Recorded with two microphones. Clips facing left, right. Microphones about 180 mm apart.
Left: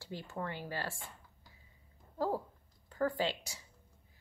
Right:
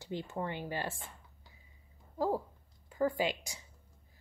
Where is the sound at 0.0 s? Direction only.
20° right (ahead or behind).